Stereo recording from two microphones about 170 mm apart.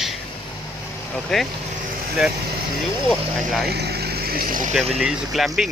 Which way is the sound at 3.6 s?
70° right (ahead or behind).